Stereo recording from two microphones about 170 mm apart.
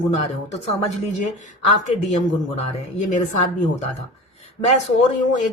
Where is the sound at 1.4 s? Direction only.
45° left (ahead or behind).